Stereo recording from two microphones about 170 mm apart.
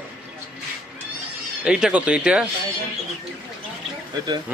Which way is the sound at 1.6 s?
5° right (ahead or behind).